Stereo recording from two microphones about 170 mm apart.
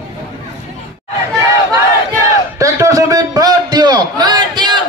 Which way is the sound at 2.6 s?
20° right (ahead or behind).